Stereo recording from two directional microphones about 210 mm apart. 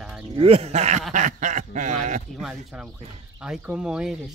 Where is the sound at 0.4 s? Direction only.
30° right (ahead or behind).